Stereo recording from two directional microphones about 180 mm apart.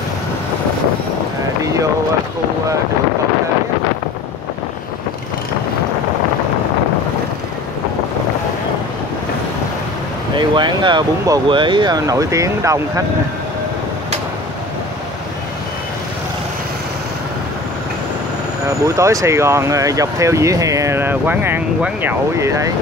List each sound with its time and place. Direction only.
1.6 s boat: 20° right (ahead or behind)
10.3 s speech: 25° right (ahead or behind)
18.9 s speech: 15° right (ahead or behind)